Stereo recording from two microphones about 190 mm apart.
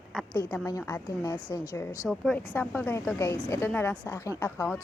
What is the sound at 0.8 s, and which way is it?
A woman's voice, 10° left (ahead or behind).